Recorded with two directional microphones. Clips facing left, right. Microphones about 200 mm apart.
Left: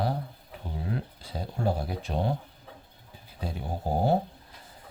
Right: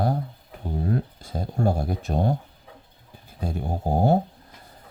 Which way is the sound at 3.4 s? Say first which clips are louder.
Right 5 dB; 45° right (ahead or behind).